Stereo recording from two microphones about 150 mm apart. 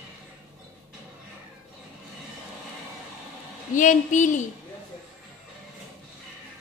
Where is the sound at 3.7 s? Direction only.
60° left (ahead or behind).